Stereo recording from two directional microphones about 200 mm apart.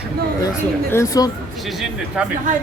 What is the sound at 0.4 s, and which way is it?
Speech, 15° left (ahead or behind).